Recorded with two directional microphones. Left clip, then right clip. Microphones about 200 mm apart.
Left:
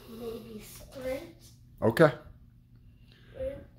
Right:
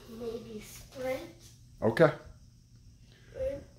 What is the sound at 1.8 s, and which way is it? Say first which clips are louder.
Speech: left 2 dB; 30° left (ahead or behind).